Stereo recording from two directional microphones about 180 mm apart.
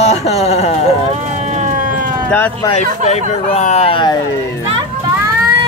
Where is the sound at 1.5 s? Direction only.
40° right (ahead or behind).